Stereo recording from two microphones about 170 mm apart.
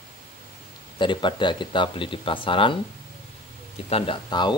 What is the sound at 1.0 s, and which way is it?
Speech, 25° left (ahead or behind).